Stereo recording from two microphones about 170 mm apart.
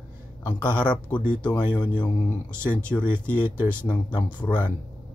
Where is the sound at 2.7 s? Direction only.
10° left (ahead or behind).